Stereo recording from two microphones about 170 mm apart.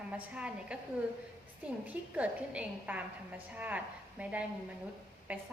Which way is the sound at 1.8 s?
10° right (ahead or behind).